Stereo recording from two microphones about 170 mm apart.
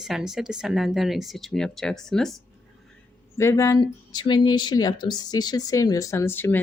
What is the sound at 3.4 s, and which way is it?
Speech, 15° left (ahead or behind).